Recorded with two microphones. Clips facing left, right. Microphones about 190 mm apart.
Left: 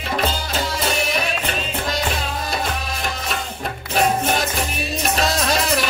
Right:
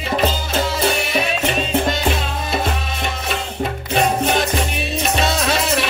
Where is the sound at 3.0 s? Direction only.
Centre (ahead or behind).